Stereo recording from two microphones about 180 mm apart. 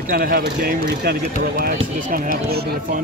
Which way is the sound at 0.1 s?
55° right (ahead or behind).